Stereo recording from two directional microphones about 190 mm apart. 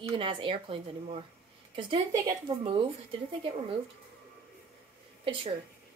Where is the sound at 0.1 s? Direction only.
25° right (ahead or behind).